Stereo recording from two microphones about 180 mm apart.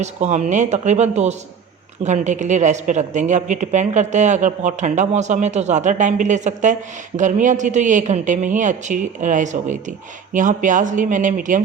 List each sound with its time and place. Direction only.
0.0 s a woman's voice: 40° right (ahead or behind)